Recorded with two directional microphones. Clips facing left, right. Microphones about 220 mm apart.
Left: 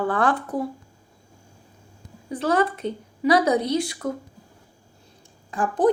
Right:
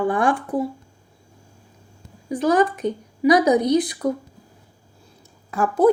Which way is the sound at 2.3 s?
15° right (ahead or behind).